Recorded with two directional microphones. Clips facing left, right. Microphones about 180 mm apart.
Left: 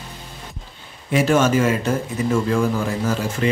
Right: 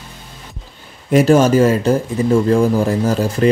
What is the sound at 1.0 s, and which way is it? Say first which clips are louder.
Speech: right 6 dB; 40° right (ahead or behind).